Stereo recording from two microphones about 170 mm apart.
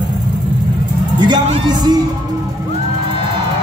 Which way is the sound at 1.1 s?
25° right (ahead or behind).